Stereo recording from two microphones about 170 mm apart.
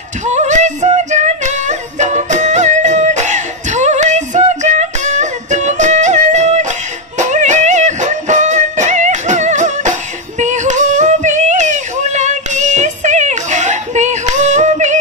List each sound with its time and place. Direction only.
0.3 s music: 45° right (ahead or behind)
10.4 s female singing: 45° right (ahead or behind)